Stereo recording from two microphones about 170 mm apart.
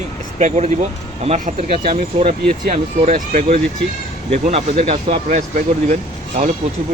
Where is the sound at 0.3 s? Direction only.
40° right (ahead or behind).